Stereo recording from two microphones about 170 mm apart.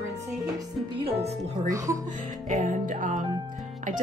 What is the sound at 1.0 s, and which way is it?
Speech, 40° right (ahead or behind).